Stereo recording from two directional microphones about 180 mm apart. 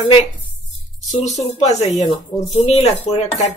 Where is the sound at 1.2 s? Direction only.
40° left (ahead or behind).